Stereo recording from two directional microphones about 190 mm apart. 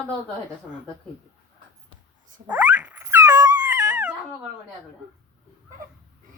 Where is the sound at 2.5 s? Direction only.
10° right (ahead or behind).